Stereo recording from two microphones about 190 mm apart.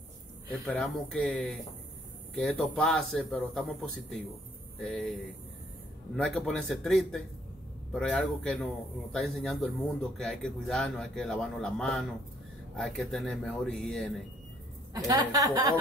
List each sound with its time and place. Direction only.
0.5 s speech: 5° left (ahead or behind)
6.1 s speech: centre (ahead or behind)
15.0 s a woman's voice: 20° right (ahead or behind)